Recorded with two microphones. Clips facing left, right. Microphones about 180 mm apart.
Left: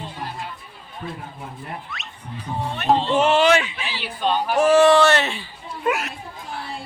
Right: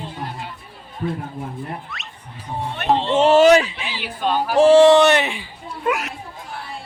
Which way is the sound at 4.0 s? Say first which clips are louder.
Right 1 dB; 10° right (ahead or behind).